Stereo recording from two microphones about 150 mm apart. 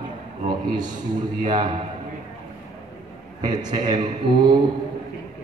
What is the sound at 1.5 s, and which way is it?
Speech, 30° right (ahead or behind).